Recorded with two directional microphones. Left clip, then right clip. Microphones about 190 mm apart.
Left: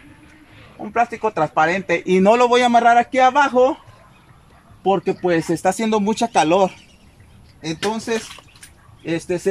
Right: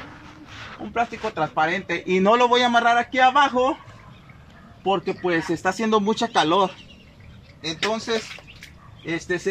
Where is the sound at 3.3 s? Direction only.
10° left (ahead or behind).